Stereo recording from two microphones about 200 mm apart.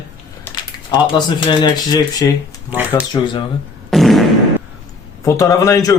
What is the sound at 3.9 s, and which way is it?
Fart, centre (ahead or behind).